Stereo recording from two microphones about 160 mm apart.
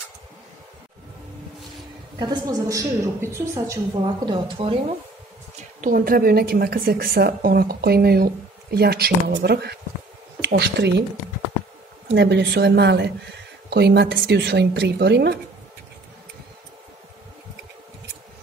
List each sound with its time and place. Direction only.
2.1 s a woman's voice: 25° right (ahead or behind)
4.0 s speech: 35° right (ahead or behind)
5.8 s a woman's voice: 60° right (ahead or behind); by 11.1 s 90° right
12.1 s a woman's voice: 90° right